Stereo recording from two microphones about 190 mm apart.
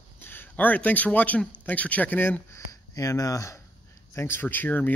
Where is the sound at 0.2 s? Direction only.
10° left (ahead or behind).